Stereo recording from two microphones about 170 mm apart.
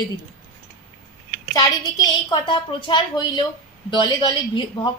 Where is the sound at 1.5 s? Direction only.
25° left (ahead or behind).